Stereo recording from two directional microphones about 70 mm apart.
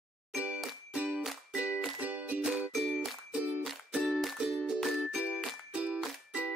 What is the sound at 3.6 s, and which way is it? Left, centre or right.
Music, centre.